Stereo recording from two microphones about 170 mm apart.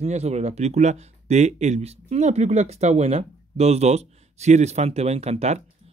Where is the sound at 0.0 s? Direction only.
40° right (ahead or behind).